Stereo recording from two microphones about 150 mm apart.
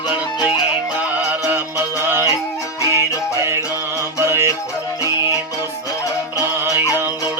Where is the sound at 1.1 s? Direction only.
10° right (ahead or behind).